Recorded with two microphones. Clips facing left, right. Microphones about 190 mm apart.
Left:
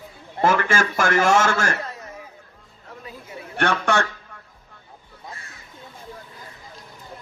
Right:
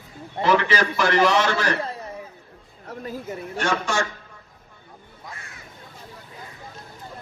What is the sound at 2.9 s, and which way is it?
Speech, 45° right (ahead or behind).